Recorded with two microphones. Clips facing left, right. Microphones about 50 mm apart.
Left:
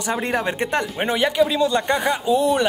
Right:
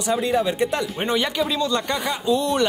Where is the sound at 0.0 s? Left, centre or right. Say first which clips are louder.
Right 2 dB; left.